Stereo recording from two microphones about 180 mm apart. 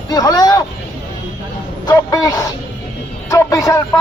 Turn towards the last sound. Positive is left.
turn(degrees=20)  # may be behind; listen again after turning